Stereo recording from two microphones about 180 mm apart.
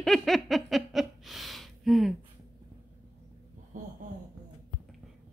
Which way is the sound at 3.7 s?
45° right (ahead or behind).